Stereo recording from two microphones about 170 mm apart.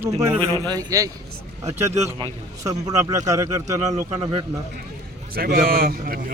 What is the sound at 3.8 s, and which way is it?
Speech, 45° right (ahead or behind).